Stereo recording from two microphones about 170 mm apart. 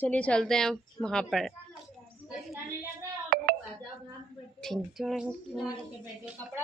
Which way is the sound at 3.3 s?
60° right (ahead or behind).